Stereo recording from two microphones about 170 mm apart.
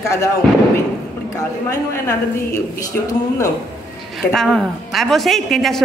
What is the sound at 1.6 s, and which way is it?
Speech, 15° left (ahead or behind).